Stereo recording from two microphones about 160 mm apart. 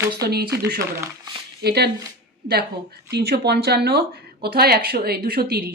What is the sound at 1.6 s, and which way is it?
Speech, 90° right.